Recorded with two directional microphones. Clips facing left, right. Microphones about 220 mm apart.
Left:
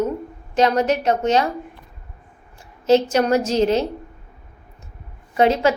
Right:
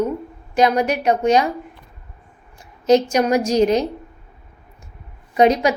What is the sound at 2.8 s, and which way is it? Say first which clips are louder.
A woman's voice: right 1 dB; 15° right (ahead or behind).